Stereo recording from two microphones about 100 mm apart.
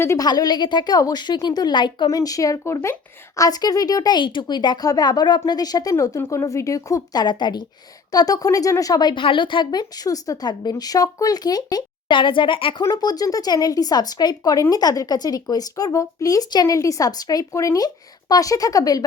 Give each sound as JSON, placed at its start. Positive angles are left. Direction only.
{"t": 0.2, "sound": "a woman's voice", "side_deg": 40}
{"t": 2.0, "sound": "speech", "side_deg": 35}
{"t": 9.2, "sound": "a woman's voice", "side_deg": 55}
{"t": 12.9, "sound": "speech", "side_deg": 40}